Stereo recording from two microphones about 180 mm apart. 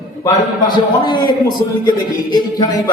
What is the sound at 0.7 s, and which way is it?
Speech, 25° left (ahead or behind).